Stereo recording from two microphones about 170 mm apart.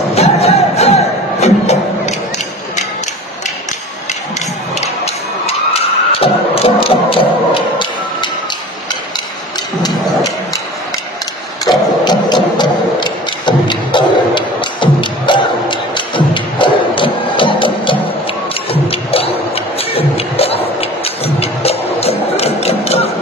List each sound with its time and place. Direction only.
0.1 s music: 35° left (ahead or behind)
4.7 s music: 35° left (ahead or behind)
11.6 s a sound: 25° left (ahead or behind)
18.7 s music: 35° left (ahead or behind)